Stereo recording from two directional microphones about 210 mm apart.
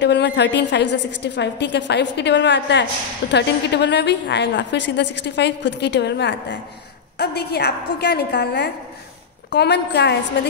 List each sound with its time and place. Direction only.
0.0 s a woman's voice: 55° left (ahead or behind)